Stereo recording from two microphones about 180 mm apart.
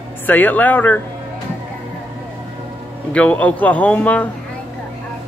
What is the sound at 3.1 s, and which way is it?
A man's voice, 5° left (ahead or behind).